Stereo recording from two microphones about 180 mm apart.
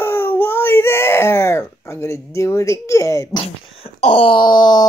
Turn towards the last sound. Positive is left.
turn(degrees=25)  # may be behind; listen again after turning